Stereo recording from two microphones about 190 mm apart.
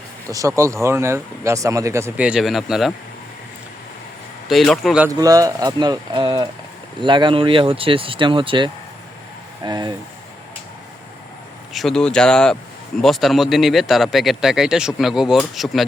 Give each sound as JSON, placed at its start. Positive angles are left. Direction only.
{"t": 0.3, "sound": "speech", "side_deg": -15}
{"t": 4.4, "sound": "speech", "side_deg": 0}
{"t": 5.0, "sound": "speech", "side_deg": -20}
{"t": 11.7, "sound": "speech", "side_deg": 0}